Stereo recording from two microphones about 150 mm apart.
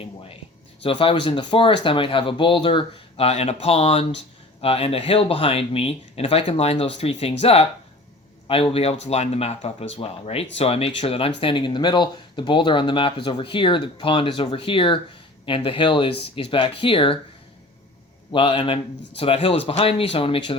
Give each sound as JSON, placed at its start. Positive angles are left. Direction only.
{"t": 0.8, "sound": "speech", "side_deg": 35}
{"t": 18.3, "sound": "speech", "side_deg": 35}